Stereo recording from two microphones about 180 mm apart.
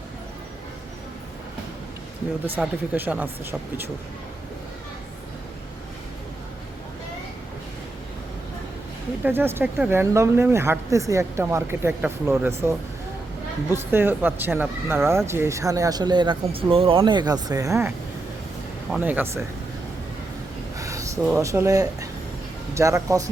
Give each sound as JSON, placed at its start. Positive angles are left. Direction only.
{"t": 2.6, "sound": "speech", "side_deg": -10}
{"t": 9.2, "sound": "speech", "side_deg": -10}
{"t": 20.7, "sound": "a sound", "side_deg": -20}
{"t": 21.3, "sound": "speech", "side_deg": -15}